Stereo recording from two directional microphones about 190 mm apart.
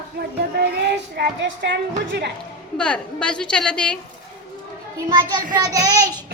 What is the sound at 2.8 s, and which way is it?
A woman's voice, 5° left (ahead or behind).